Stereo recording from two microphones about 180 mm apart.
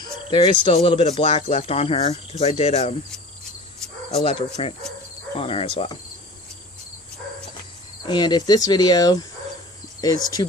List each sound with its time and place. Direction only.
0.0 s speech: 25° left (ahead or behind)
4.1 s speech: 30° left (ahead or behind)
8.0 s speech: 25° left (ahead or behind)